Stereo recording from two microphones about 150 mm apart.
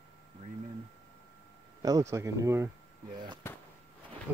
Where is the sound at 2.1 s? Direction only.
20° right (ahead or behind).